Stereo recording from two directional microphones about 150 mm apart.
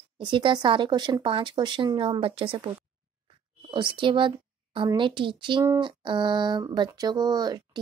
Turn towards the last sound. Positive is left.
turn(degrees=-25)  # may be behind; listen again after turning